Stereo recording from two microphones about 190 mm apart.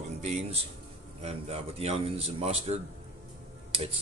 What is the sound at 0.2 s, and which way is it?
Speech, 35° right (ahead or behind).